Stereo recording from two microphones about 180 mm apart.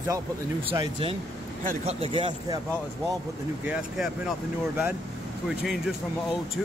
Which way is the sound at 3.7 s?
5° right (ahead or behind).